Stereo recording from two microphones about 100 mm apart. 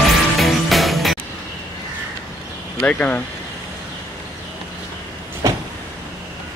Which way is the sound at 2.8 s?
15° left (ahead or behind).